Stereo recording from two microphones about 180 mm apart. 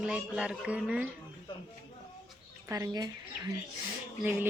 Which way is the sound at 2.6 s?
20° right (ahead or behind).